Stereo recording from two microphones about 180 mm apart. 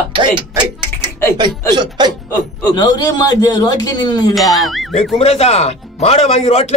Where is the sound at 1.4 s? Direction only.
25° right (ahead or behind).